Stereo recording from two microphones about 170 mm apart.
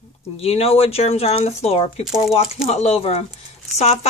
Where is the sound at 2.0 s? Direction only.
Centre (ahead or behind).